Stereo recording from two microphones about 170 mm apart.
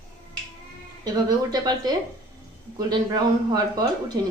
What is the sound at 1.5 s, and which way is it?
A man's voice, 25° right (ahead or behind).